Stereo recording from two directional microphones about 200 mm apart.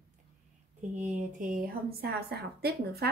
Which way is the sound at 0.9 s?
40° right (ahead or behind).